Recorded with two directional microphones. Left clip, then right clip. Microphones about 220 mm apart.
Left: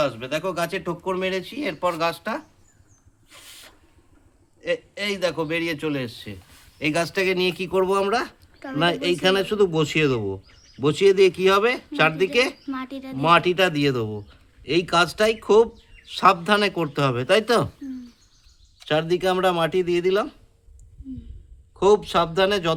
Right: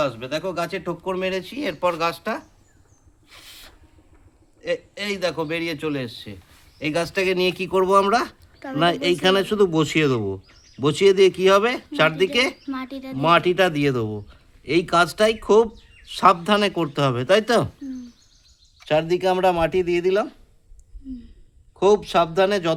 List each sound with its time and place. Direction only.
0.0 s speech: 5° left (ahead or behind)
3.2 s a sound: 5° left (ahead or behind)
4.6 s speech: centre (ahead or behind)
7.0 s speech: 5° right (ahead or behind)
8.5 s a sound: centre (ahead or behind)
8.8 s speech: 15° right (ahead or behind)
12.6 s speech: centre (ahead or behind)
18.9 s speech: 5° right (ahead or behind)
21.8 s speech: 5° right (ahead or behind)